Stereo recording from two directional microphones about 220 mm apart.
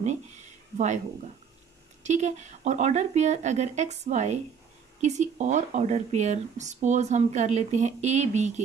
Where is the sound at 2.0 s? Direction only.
30° right (ahead or behind).